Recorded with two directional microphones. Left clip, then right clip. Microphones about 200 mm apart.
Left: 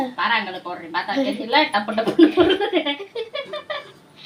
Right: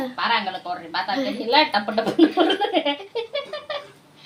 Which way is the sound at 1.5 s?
20° right (ahead or behind).